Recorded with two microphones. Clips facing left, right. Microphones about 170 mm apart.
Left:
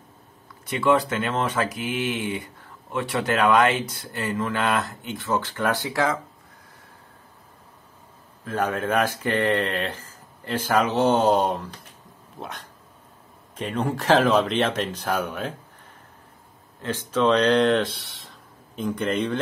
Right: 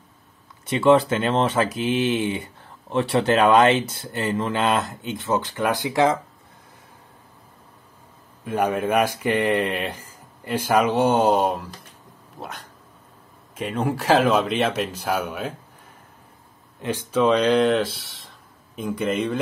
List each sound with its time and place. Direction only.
0.7 s speech: 25° right (ahead or behind)
8.5 s speech: 15° right (ahead or behind)
16.8 s speech: 10° right (ahead or behind)